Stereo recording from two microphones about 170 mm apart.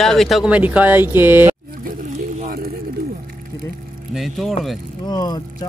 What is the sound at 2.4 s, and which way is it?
Pigeon, 65° right (ahead or behind).